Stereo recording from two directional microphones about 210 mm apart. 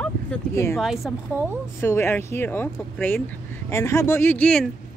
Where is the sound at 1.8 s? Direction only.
10° left (ahead or behind).